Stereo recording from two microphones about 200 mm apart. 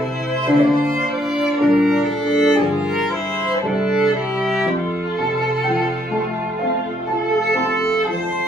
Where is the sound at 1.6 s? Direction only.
Centre (ahead or behind).